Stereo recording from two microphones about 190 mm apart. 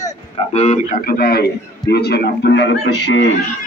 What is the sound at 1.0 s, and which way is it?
Speech, 55° left (ahead or behind).